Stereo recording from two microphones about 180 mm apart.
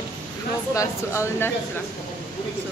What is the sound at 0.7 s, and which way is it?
Speech, 15° left (ahead or behind).